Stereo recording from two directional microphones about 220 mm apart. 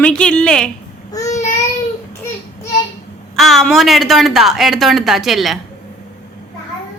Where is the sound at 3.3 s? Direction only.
Centre (ahead or behind).